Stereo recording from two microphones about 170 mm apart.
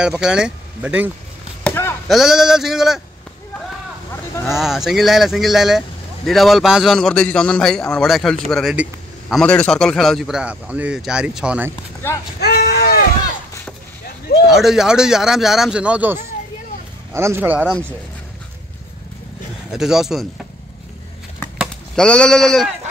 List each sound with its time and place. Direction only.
0.0 s speech: 5° right (ahead or behind)
1.6 s chop: 15° left (ahead or behind)
2.0 s speech: centre (ahead or behind)
4.5 s speech: centre (ahead or behind)
12.4 s speech: 70° left (ahead or behind)
14.4 s speech: centre (ahead or behind)
19.7 s speech: 5° right (ahead or behind)
21.5 s speech: 5° left (ahead or behind)